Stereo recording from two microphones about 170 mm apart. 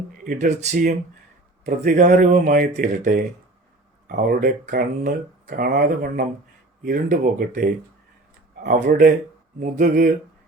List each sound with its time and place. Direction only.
0.3 s speech: 50° right (ahead or behind)